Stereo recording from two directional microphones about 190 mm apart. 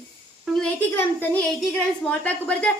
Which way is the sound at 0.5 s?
10° left (ahead or behind).